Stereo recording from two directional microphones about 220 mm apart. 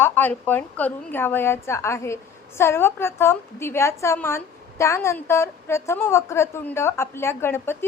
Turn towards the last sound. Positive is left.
turn(degrees=10)  # may be behind; listen again after turning